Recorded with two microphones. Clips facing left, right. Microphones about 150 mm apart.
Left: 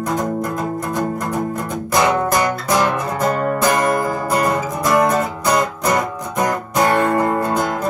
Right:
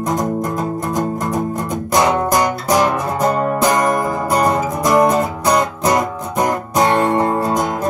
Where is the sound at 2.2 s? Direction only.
15° right (ahead or behind).